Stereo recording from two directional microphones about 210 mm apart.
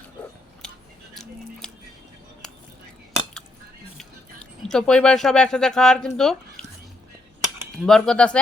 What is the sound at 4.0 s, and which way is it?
Speech, centre (ahead or behind).